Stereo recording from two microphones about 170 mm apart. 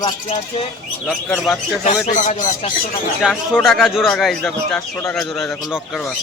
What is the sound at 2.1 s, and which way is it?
Speech, 45° left (ahead or behind).